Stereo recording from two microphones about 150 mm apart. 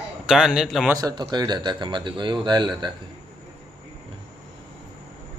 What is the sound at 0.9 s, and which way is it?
Speech, 25° right (ahead or behind).